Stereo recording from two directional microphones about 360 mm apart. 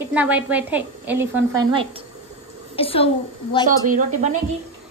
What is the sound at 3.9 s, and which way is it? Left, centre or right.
Speech, centre.